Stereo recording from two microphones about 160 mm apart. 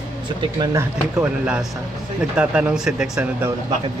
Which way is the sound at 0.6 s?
20° right (ahead or behind).